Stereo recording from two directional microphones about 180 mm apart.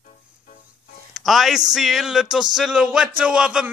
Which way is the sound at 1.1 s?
Centre (ahead or behind).